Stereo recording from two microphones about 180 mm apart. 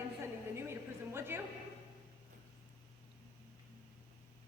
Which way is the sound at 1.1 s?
15° right (ahead or behind).